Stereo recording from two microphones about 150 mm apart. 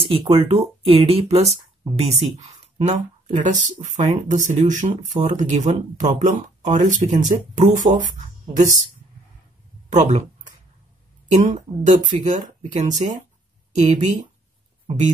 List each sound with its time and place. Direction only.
0.3 s speech: 40° right (ahead or behind); by 8.0 s 55° right (ahead or behind)
9.9 s speech: 55° right (ahead or behind)